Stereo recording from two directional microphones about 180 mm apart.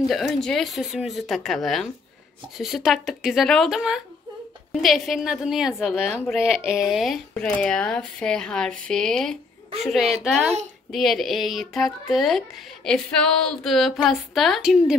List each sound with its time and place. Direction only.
0.1 s a woman's voice: centre (ahead or behind)